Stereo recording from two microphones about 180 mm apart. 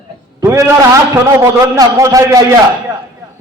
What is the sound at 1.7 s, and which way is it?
Speech, 15° right (ahead or behind).